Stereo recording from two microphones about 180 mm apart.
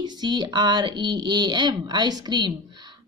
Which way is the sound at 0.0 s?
25° right (ahead or behind).